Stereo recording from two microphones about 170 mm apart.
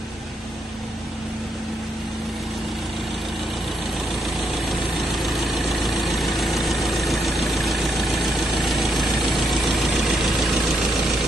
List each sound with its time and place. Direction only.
4.1 s vehicle: centre (ahead or behind)